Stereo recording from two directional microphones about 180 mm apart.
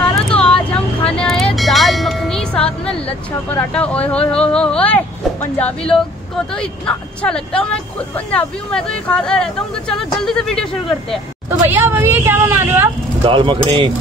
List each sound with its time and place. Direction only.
0.4 s music: 5° left (ahead or behind)
6.5 s speech: 5° left (ahead or behind)
11.6 s a woman's voice: 10° right (ahead or behind)
13.2 s speech: 30° right (ahead or behind)